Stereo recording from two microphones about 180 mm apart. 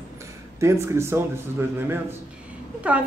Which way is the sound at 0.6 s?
15° right (ahead or behind).